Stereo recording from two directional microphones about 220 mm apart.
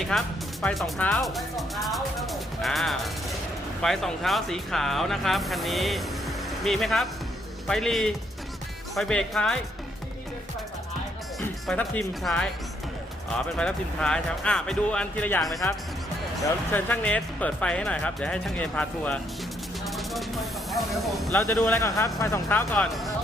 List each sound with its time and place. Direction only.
0.0 s speech: centre (ahead or behind)
11.6 s speech: 5° left (ahead or behind)
13.6 s speech: 5° left (ahead or behind)
16.7 s speech: 5° left (ahead or behind)
19.8 s hiss: centre (ahead or behind)
21.3 s speech: 10° left (ahead or behind)